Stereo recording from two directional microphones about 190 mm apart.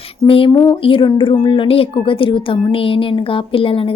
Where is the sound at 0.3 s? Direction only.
30° left (ahead or behind).